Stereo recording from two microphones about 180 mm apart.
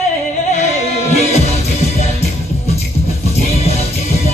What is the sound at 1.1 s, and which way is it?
Music, 35° left (ahead or behind).